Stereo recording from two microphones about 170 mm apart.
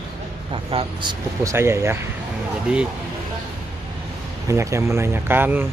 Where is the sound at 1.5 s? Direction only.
15° right (ahead or behind).